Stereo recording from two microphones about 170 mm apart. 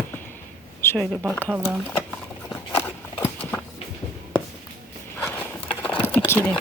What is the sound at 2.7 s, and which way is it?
Horse, 15° left (ahead or behind).